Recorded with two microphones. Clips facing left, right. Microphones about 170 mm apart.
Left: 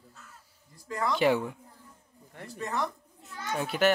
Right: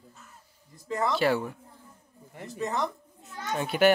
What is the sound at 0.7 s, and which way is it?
Speech, 25° right (ahead or behind).